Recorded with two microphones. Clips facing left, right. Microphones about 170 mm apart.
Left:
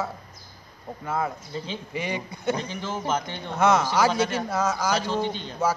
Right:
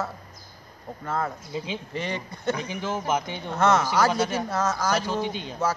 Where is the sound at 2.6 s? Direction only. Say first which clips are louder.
Right 1 dB; 10° right (ahead or behind).